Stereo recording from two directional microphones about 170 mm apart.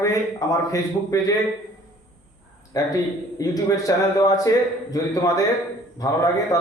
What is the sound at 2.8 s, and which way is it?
A man's voice, 20° left (ahead or behind).